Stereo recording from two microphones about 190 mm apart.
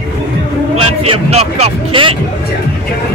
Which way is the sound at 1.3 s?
35° right (ahead or behind).